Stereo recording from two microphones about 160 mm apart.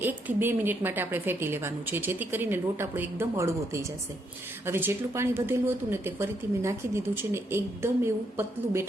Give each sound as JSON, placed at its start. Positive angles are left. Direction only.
{"t": 0.0, "sound": "speech", "side_deg": -15}